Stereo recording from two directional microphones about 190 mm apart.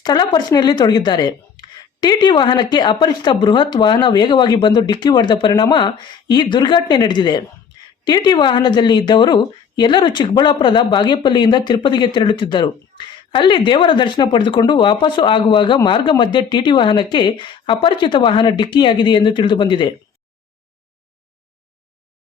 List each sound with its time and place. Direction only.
0.0 s a woman's voice: 20° left (ahead or behind)